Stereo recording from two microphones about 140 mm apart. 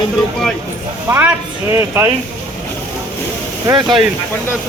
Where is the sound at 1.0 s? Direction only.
15° right (ahead or behind).